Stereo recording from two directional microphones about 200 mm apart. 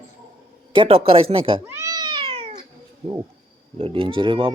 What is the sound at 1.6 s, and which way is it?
Cat, 15° right (ahead or behind).